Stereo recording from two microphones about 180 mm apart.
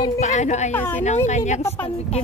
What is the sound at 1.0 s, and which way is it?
A child's voice, 40° left (ahead or behind).